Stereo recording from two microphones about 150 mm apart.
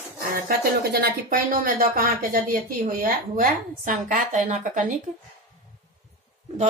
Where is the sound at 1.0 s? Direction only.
70° right (ahead or behind).